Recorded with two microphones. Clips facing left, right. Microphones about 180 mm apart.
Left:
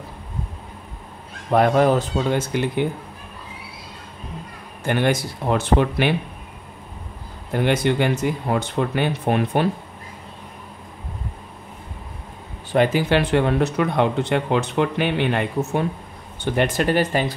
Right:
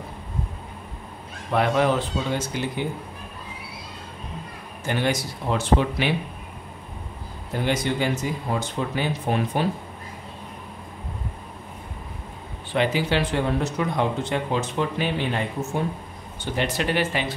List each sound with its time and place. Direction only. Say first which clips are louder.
1.5 s speech: left 5 dB; 45° left (ahead or behind)
4.8 s speech: left 4 dB; 55° left (ahead or behind)
7.5 s speech: left 5 dB; 60° left (ahead or behind)
12.7 s speech: left 5 dB; 50° left (ahead or behind); by 15.8 s 65° left (ahead or behind)
16.5 s speech: left 5 dB; 50° left (ahead or behind)